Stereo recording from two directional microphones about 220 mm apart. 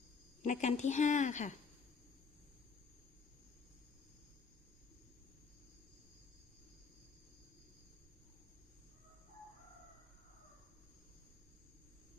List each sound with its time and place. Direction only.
0.4 s a woman's voice: 35° left (ahead or behind)